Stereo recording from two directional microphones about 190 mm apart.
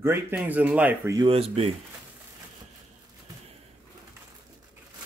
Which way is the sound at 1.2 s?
30° right (ahead or behind).